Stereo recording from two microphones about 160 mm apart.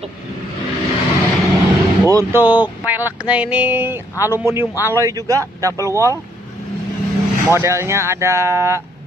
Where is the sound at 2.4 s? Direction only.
10° right (ahead or behind).